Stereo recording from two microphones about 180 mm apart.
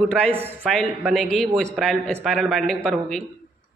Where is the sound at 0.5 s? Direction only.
5° left (ahead or behind).